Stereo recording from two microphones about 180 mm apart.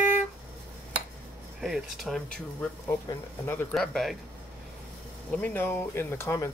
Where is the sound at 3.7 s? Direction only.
Centre (ahead or behind).